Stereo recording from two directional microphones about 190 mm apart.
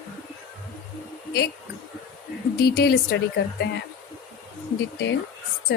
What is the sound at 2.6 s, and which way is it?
A woman's voice, 55° left (ahead or behind).